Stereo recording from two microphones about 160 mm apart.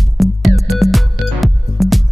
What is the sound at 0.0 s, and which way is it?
Music, centre (ahead or behind).